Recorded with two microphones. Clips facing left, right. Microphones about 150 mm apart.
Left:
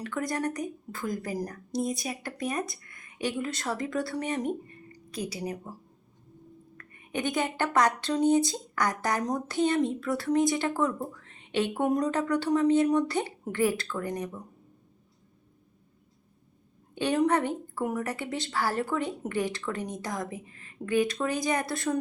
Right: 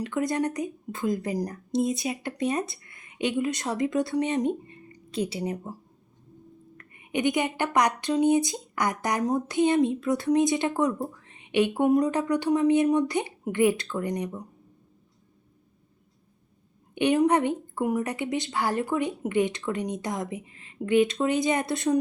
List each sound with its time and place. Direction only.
0.0 s a woman's voice: 20° right (ahead or behind)
6.7 s a woman's voice: 20° right (ahead or behind)
16.9 s a woman's voice: 20° right (ahead or behind)